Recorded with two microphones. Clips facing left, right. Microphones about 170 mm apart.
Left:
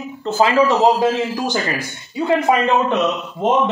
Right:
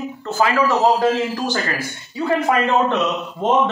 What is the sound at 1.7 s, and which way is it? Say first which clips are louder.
Speech: left 2 dB; 15° left (ahead or behind).